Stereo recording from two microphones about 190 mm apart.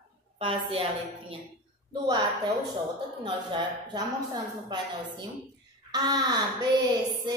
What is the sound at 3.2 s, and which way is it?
A woman's voice, 20° right (ahead or behind).